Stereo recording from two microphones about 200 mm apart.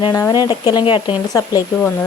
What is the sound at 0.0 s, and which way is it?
Speech, 15° left (ahead or behind).